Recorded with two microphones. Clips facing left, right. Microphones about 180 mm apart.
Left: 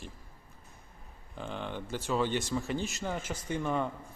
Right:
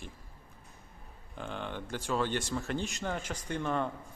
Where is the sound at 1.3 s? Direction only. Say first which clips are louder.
Left 1 dB; 5° left (ahead or behind).